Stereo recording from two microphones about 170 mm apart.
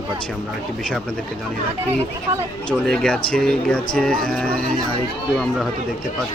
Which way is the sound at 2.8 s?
5° left (ahead or behind).